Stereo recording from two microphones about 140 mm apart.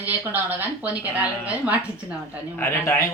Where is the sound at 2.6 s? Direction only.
20° left (ahead or behind).